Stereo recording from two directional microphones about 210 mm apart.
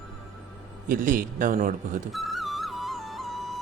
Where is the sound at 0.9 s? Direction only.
40° right (ahead or behind).